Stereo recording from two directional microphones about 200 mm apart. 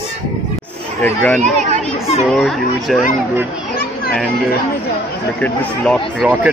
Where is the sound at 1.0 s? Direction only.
10° left (ahead or behind).